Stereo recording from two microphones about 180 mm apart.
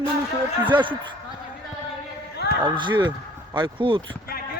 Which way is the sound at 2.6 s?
25° right (ahead or behind).